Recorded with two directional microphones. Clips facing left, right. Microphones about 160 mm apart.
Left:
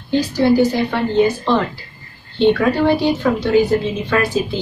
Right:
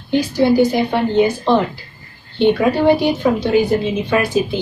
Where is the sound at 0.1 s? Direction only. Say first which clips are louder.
Even; 15° right (ahead or behind).